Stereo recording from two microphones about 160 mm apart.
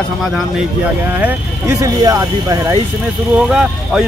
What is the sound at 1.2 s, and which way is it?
Speech, 20° right (ahead or behind).